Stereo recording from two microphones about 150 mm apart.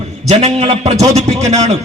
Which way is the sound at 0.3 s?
45° right (ahead or behind).